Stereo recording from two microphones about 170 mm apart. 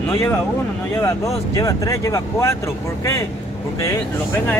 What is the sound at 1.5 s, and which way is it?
Speech, 20° left (ahead or behind).